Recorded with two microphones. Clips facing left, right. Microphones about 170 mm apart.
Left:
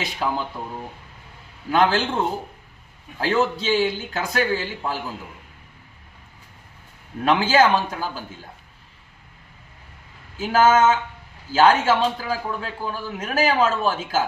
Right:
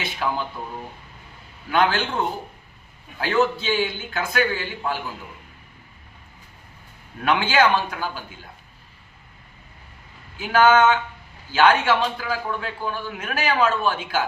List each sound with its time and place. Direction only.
1.7 s a man's voice: 35° left (ahead or behind)
7.3 s a man's voice: 40° left (ahead or behind)
10.3 s a man's voice: 35° left (ahead or behind)